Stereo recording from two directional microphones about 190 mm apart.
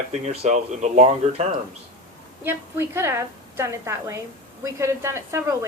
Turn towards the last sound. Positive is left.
turn(degrees=-15)  # may be behind; listen again after turning